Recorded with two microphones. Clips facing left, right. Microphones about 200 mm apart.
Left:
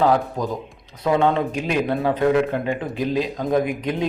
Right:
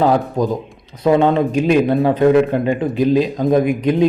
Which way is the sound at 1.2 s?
30° right (ahead or behind).